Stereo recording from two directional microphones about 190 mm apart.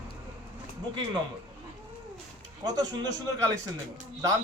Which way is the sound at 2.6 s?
20° right (ahead or behind).